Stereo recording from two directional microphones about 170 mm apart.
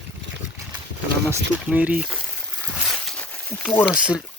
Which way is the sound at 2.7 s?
Centre (ahead or behind).